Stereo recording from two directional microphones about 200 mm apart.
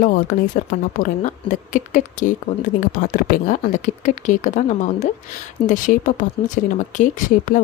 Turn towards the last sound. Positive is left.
turn(degrees=40)  # may be behind; listen again after turning